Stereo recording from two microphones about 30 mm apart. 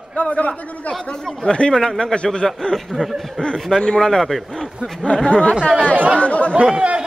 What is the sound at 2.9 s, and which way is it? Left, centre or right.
Speech, centre.